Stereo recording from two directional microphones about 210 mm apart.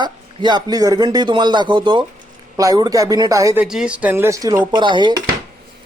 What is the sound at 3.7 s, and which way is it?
A man's voice, 5° right (ahead or behind).